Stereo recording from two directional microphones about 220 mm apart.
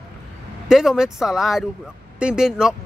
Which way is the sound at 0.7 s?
Centre (ahead or behind).